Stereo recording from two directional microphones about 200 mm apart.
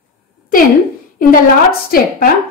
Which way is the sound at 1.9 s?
45° left (ahead or behind).